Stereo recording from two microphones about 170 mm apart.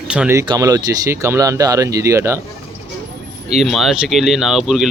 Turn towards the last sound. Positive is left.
turn(degrees=0)  # may be behind; listen again after turning